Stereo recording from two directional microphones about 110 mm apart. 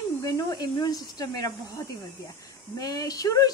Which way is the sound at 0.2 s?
35° left (ahead or behind).